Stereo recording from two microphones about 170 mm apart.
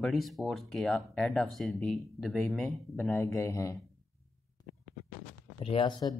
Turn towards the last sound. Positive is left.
turn(degrees=25)  # may be behind; listen again after turning